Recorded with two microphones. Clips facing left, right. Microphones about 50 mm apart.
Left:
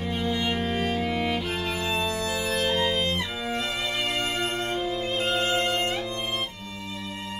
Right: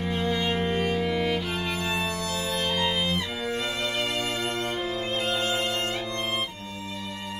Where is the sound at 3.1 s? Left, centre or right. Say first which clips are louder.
Even; left.